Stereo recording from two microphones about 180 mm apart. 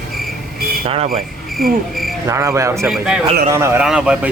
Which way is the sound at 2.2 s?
15° right (ahead or behind).